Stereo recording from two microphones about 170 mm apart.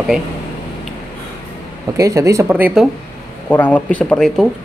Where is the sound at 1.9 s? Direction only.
20° right (ahead or behind).